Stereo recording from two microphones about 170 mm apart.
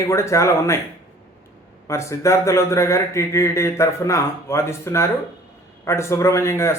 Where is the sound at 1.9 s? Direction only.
15° left (ahead or behind).